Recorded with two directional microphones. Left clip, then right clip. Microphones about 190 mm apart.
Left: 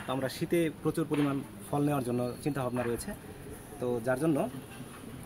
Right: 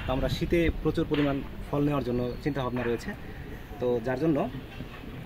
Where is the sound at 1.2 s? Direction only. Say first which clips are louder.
Right 3 dB; 20° left (ahead or behind).